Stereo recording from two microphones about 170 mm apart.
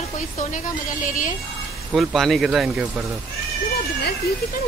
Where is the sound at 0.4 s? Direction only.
50° left (ahead or behind).